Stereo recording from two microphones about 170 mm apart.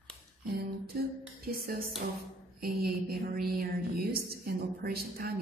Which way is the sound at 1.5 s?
60° right (ahead or behind).